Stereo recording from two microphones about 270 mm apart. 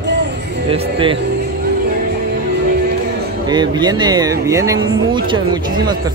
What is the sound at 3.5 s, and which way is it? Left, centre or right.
Speech, centre.